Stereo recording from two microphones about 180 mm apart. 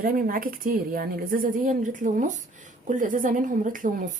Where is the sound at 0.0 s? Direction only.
50° right (ahead or behind).